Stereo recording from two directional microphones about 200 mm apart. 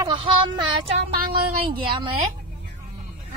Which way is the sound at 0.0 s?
25° right (ahead or behind).